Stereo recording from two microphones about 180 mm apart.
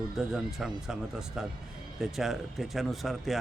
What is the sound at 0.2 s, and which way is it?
Speech, centre (ahead or behind).